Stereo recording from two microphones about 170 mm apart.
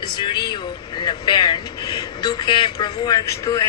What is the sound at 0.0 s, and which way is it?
Speech, 30° left (ahead or behind).